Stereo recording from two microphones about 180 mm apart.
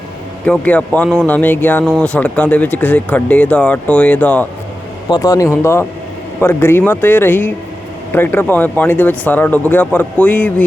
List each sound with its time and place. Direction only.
0.4 s speech: 5° left (ahead or behind)
5.0 s speech: 20° left (ahead or behind)